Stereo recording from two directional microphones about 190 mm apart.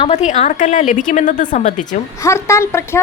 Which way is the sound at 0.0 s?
35° left (ahead or behind).